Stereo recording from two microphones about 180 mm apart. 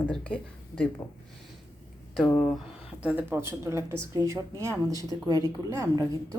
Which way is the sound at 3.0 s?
10° right (ahead or behind).